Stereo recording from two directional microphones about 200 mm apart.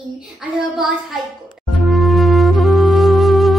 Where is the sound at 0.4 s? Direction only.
Centre (ahead or behind).